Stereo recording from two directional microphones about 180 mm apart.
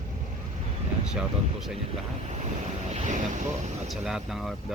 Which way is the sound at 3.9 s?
Centre (ahead or behind).